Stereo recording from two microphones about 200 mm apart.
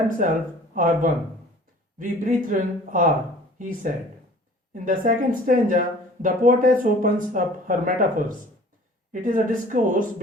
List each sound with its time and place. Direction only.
0.2 s speech: 40° right (ahead or behind)